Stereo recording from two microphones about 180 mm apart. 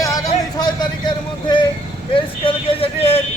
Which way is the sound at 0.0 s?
20° left (ahead or behind).